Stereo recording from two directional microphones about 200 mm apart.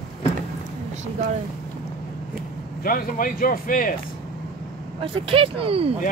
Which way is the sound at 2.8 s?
45° left (ahead or behind).